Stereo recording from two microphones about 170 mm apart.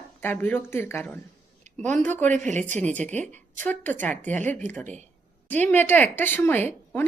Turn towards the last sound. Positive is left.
turn(degrees=10)  # may be behind; listen again after turning